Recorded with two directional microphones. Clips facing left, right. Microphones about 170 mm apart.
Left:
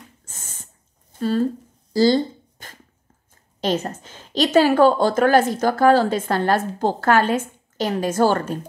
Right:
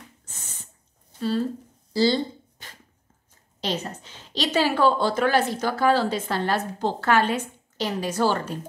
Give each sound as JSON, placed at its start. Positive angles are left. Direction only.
{"t": 0.3, "sound": "owl", "side_deg": 45}
{"t": 1.1, "sound": "a sound", "side_deg": 50}
{"t": 3.6, "sound": "a woman's voice", "side_deg": 50}